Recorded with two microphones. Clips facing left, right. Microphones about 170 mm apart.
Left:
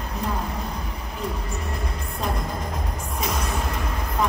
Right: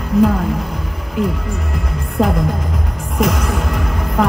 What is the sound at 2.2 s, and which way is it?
Music, 90° right.